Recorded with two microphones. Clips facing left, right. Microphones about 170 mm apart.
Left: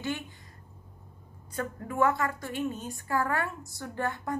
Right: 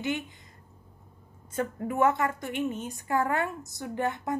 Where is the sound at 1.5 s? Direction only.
25° right (ahead or behind).